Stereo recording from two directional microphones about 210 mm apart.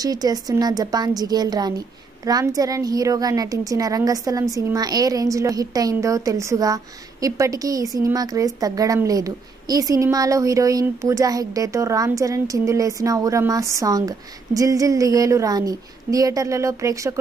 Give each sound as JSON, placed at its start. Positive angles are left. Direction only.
{"t": 0.0, "sound": "a woman's voice", "side_deg": -15}